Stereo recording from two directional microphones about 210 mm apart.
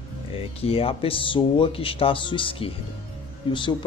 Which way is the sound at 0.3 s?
25° left (ahead or behind).